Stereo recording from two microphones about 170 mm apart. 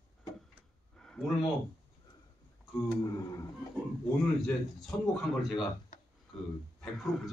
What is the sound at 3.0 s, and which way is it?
Speech, 25° left (ahead or behind).